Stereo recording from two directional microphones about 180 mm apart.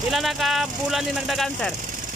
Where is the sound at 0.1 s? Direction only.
Centre (ahead or behind).